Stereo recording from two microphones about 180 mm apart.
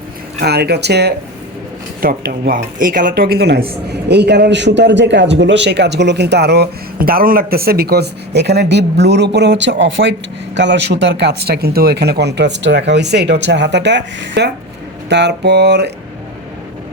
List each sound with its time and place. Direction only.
0.4 s speech: 65° right (ahead or behind)
2.6 s speech: 50° right (ahead or behind); by 15.9 s 65° right (ahead or behind)